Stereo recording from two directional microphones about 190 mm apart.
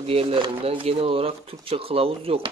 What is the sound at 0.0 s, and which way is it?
Speech, 30° right (ahead or behind).